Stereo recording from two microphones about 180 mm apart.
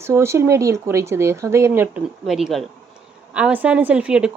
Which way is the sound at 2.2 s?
Centre (ahead or behind).